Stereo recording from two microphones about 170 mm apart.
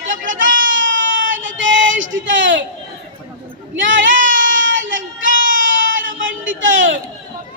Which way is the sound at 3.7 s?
90° right.